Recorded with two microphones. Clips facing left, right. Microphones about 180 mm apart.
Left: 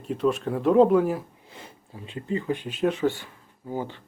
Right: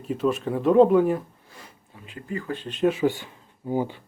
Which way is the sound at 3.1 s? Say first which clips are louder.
Right 2 dB; 15° right (ahead or behind).